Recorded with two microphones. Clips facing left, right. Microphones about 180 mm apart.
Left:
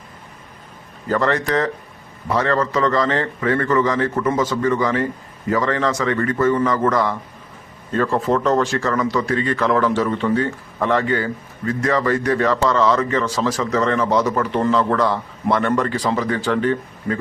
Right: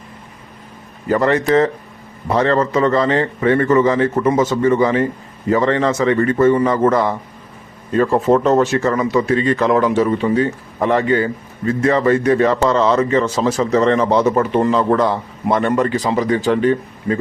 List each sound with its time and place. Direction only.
1.0 s a man's voice: 15° right (ahead or behind)
14.5 s speech: 15° right (ahead or behind)